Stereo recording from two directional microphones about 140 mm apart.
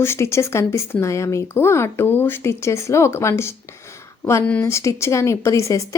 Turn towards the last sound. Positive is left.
turn(degrees=20)  # may be behind; listen again after turning